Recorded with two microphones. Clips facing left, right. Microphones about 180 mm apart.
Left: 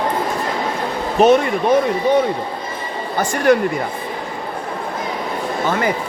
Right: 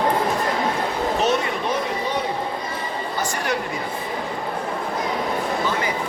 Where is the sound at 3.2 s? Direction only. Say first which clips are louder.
Left 11 dB; 55° left (ahead or behind).